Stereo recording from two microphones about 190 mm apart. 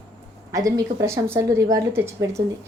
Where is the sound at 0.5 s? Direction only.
15° right (ahead or behind).